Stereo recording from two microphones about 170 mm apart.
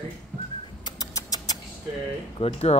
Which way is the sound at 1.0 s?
20° left (ahead or behind).